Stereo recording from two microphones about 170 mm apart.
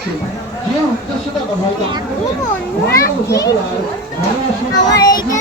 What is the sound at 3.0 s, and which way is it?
Children playing, 20° left (ahead or behind).